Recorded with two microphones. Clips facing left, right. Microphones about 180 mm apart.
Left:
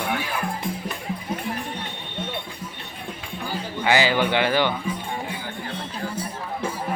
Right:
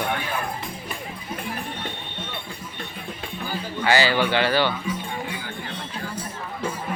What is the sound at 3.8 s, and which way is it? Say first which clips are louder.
Speech: even; 15° left (ahead or behind).